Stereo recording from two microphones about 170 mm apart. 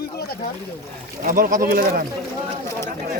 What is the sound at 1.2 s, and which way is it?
Speech, 50° right (ahead or behind).